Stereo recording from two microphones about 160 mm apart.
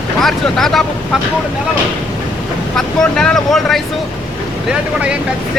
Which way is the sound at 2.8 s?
5° left (ahead or behind).